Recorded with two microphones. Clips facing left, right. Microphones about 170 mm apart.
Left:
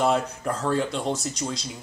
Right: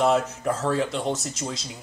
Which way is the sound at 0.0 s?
Centre (ahead or behind).